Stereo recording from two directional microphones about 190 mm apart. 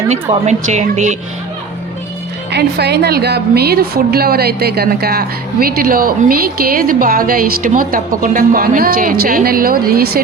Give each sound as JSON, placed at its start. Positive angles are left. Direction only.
{"t": 0.1, "sound": "a woman's voice", "side_deg": -40}
{"t": 2.5, "sound": "a woman's voice", "side_deg": -60}